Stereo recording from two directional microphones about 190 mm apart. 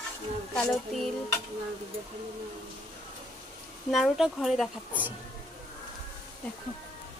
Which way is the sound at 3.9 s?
Centre (ahead or behind).